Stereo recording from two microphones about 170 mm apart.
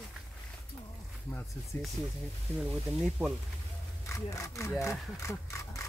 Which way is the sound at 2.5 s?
Centre (ahead or behind).